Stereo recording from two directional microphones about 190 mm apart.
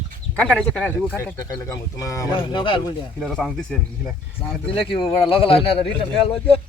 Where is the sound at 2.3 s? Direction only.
25° left (ahead or behind).